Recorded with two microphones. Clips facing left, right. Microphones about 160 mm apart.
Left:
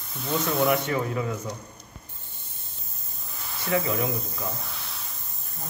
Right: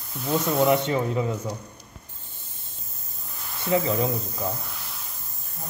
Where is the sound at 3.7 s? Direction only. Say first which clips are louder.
Right 3 dB; 30° right (ahead or behind).